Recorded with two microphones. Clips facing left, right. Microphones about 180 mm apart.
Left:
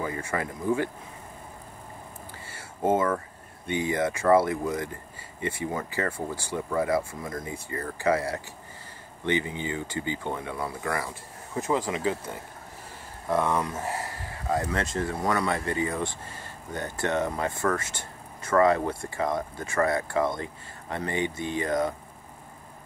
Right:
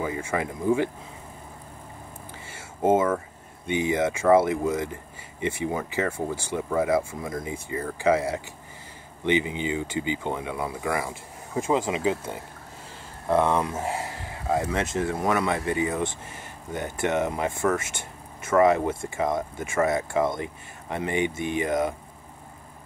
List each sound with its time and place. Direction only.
0.0 s speech: 15° right (ahead or behind)
2.5 s a sound: 25° right (ahead or behind)
3.6 s speech: 20° right (ahead or behind)
13.4 s speech: 25° right (ahead or behind)
14.5 s speech: 10° right (ahead or behind)
18.5 s speech: 5° right (ahead or behind)
18.9 s speech: 25° right (ahead or behind)